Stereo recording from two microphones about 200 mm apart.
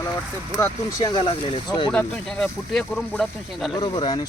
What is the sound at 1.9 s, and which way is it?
Speech, 5° left (ahead or behind).